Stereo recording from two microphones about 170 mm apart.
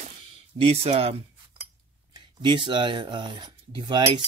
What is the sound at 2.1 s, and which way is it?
Speech, 30° right (ahead or behind).